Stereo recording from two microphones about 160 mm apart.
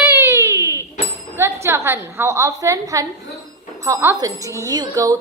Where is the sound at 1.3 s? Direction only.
15° right (ahead or behind).